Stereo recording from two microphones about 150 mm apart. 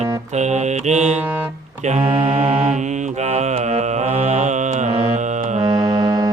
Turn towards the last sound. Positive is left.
turn(degrees=-25)  # may be behind; listen again after turning